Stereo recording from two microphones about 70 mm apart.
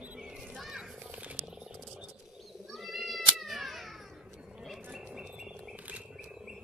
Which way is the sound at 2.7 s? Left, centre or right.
Centre.